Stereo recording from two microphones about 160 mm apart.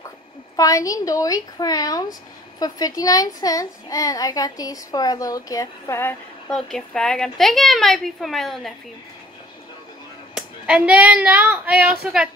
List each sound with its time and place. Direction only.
0.6 s a child's voice: 20° left (ahead or behind)
6.5 s a woman's voice: 5° left (ahead or behind)
10.3 s speech: 5° right (ahead or behind)